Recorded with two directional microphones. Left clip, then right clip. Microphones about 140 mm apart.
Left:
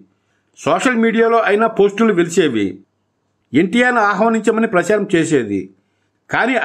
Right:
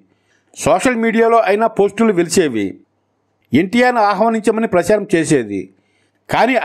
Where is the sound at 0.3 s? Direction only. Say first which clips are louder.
Right 3 dB; 30° right (ahead or behind).